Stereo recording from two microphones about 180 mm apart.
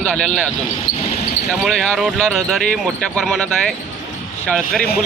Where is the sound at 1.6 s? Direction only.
Centre (ahead or behind).